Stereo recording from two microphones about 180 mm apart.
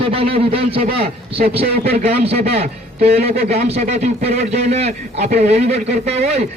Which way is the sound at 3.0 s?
60° right (ahead or behind).